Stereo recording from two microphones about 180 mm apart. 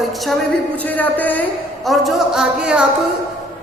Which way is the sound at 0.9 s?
10° left (ahead or behind).